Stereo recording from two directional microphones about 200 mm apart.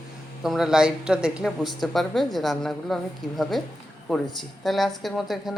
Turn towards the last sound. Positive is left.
turn(degrees=0)  # may be behind; listen again after turning